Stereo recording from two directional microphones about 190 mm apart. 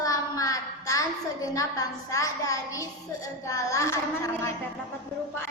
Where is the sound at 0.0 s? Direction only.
20° left (ahead or behind).